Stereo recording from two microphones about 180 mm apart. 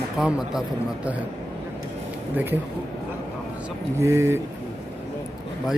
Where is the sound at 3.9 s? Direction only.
15° right (ahead or behind).